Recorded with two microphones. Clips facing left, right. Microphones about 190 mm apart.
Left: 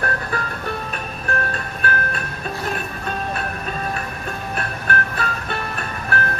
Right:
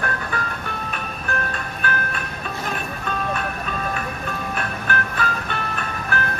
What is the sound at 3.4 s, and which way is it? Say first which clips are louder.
Music: even; 40° left (ahead or behind).